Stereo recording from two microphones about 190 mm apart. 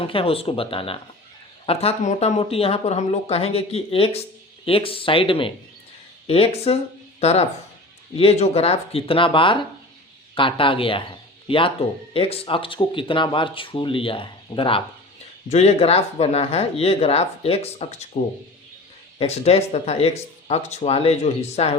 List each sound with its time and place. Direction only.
0.0 s speech: 30° left (ahead or behind)
19.2 s speech: 35° left (ahead or behind)